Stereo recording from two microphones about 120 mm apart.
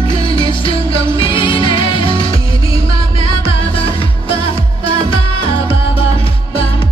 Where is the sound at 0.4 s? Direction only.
50° left (ahead or behind).